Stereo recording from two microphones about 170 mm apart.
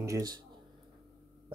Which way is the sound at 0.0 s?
20° right (ahead or behind).